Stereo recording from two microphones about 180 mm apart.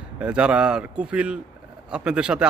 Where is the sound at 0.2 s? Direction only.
5° right (ahead or behind).